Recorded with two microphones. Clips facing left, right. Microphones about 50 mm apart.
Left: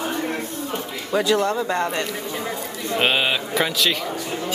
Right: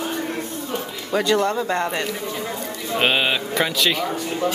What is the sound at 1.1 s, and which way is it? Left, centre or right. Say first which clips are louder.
A woman's voice: even; centre.